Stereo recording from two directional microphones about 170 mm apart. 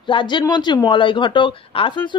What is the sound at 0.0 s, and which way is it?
Speech, 30° left (ahead or behind).